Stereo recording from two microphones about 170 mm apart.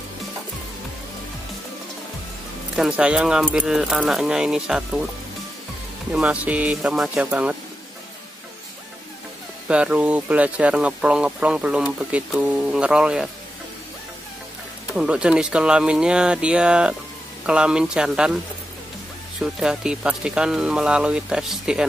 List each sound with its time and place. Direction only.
2.7 s speech: 5° right (ahead or behind)
6.1 s speech: 5° right (ahead or behind)
9.7 s speech: 5° right (ahead or behind)
15.0 s speech: 5° right (ahead or behind)
19.4 s speech: 5° right (ahead or behind)